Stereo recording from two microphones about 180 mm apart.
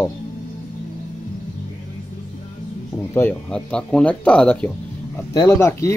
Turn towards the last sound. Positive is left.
turn(degrees=15)  # may be behind; listen again after turning